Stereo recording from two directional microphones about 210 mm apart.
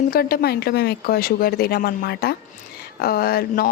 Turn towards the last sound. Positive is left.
turn(degrees=45)  # may be behind; listen again after turning